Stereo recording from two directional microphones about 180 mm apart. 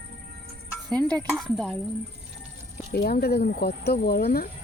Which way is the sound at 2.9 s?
60° left (ahead or behind).